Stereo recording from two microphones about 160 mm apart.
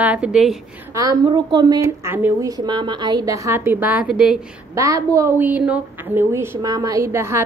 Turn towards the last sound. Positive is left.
turn(degrees=-15)  # may be behind; listen again after turning